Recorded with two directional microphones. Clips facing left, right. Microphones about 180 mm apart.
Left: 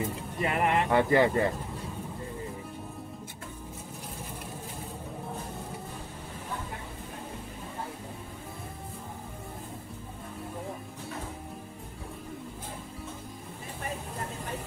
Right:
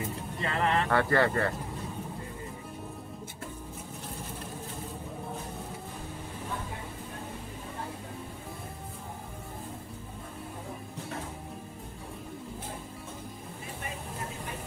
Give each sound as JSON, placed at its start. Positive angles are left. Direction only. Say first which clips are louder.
{"t": 0.0, "sound": "speech", "louder": "left 3 dB", "side_deg": 20}